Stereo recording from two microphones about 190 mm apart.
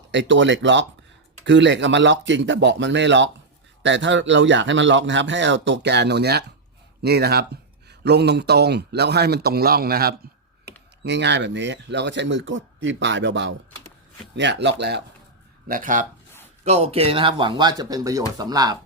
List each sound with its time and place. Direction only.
0.1 s speech: 70° right (ahead or behind); by 10.2 s 55° right (ahead or behind)
11.0 s speech: 65° right (ahead or behind)
15.6 s speech: 45° right (ahead or behind); by 18.8 s 20° right (ahead or behind)